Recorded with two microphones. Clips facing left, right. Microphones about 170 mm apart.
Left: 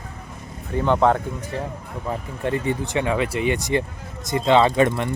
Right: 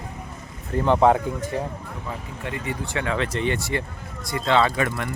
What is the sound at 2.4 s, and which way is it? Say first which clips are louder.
Speech: left 8 dB; 35° left (ahead or behind).